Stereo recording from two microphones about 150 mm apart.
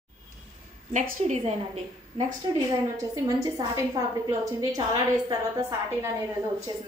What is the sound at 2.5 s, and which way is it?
A woman's voice, 25° right (ahead or behind).